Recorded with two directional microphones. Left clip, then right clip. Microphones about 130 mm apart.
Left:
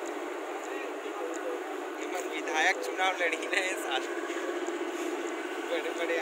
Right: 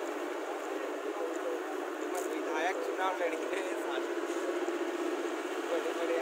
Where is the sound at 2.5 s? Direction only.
90° right.